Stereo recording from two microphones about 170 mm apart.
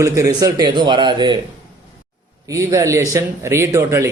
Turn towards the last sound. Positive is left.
turn(degrees=-15)  # may be behind; listen again after turning